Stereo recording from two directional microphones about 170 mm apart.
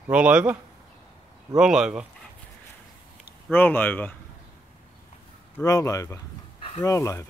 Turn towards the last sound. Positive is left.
turn(degrees=15)  # may be behind; listen again after turning